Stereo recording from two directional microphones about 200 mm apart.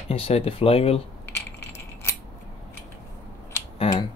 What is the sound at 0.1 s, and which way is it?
Speech, 30° left (ahead or behind).